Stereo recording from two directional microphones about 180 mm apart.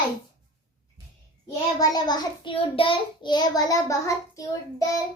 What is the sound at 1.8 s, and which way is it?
A child's voice, 20° left (ahead or behind).